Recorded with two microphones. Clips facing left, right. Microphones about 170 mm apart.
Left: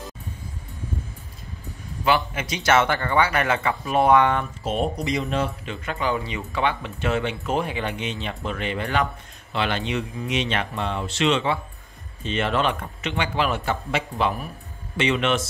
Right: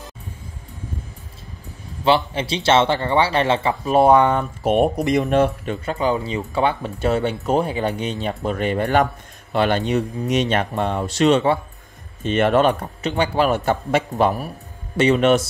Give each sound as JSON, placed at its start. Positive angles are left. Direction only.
{"t": 2.0, "sound": "speech", "side_deg": -30}
{"t": 4.6, "sound": "speech", "side_deg": -60}
{"t": 5.9, "sound": "speech", "side_deg": -35}
{"t": 12.2, "sound": "a man's voice", "side_deg": -50}